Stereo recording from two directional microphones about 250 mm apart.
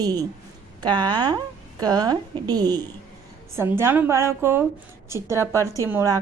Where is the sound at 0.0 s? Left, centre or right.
Centre.